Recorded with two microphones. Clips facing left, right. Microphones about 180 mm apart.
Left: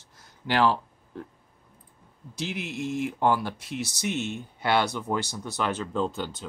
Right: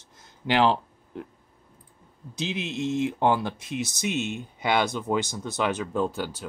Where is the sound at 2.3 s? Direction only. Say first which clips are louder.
Right 2 dB; 20° right (ahead or behind).